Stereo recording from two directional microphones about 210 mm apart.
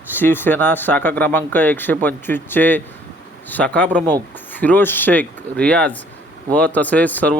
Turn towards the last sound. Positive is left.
turn(degrees=5)  # may be behind; listen again after turning